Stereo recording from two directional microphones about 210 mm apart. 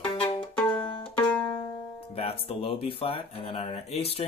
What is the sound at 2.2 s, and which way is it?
Speech, 25° left (ahead or behind).